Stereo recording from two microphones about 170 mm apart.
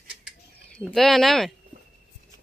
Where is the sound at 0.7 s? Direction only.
Centre (ahead or behind).